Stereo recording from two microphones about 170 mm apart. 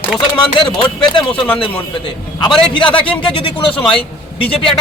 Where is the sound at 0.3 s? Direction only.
25° left (ahead or behind).